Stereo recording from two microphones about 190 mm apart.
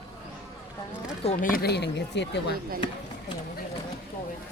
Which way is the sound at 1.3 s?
45° left (ahead or behind).